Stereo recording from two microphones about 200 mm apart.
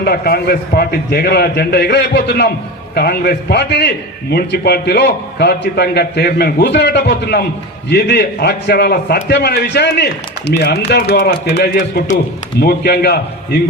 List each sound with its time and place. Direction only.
0.0 s a man's voice: 50° left (ahead or behind)